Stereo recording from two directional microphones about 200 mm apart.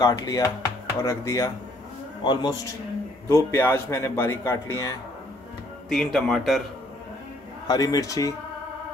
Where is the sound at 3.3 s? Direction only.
10° left (ahead or behind).